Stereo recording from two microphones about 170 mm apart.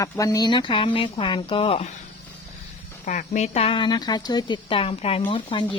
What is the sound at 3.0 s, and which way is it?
Speech, 45° left (ahead or behind).